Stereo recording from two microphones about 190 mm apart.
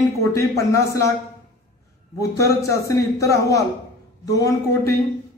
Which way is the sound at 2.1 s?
15° left (ahead or behind).